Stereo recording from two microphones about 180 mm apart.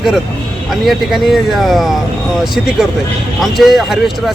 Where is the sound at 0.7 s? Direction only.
Centre (ahead or behind).